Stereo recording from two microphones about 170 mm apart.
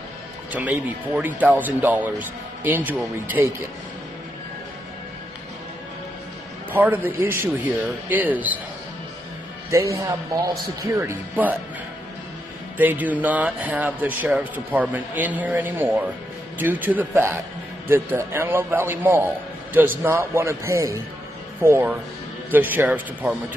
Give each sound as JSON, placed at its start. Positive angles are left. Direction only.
{"t": 0.5, "sound": "speech", "side_deg": -10}
{"t": 6.7, "sound": "speech", "side_deg": -10}
{"t": 9.7, "sound": "speech", "side_deg": -15}
{"t": 12.7, "sound": "speech", "side_deg": -10}